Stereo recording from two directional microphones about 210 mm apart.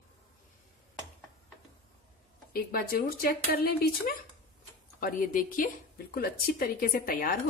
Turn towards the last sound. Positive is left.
turn(degrees=40)  # may be behind; listen again after turning